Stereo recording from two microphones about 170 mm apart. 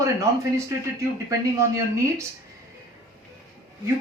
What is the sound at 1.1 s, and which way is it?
Speech, 15° right (ahead or behind).